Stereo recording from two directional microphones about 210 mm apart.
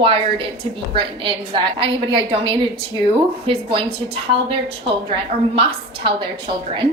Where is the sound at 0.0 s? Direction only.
25° right (ahead or behind).